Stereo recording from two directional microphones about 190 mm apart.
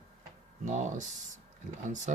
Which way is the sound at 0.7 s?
40° right (ahead or behind).